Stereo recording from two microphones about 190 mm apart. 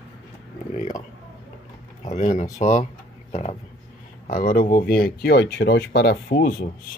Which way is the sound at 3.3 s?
35° left (ahead or behind).